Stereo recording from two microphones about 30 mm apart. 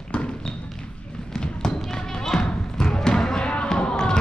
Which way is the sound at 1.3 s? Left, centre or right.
Left.